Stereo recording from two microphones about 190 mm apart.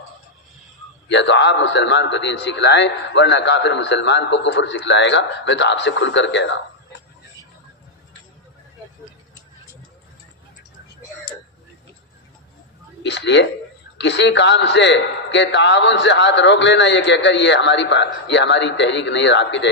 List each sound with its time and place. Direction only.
1.0 s a man's voice: 70° left (ahead or behind)
13.0 s a man's voice: 65° left (ahead or behind)